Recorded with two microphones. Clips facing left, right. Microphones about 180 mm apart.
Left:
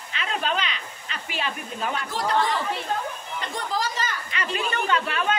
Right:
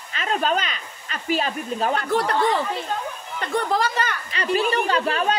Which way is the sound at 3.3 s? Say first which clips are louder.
Right 7 dB; 60° right (ahead or behind).